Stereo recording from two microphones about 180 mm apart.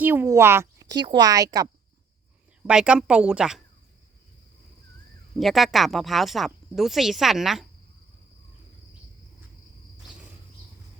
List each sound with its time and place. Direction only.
0.0 s a woman's voice: 10° right (ahead or behind)
2.6 s speech: 5° right (ahead or behind)
5.4 s speech: centre (ahead or behind)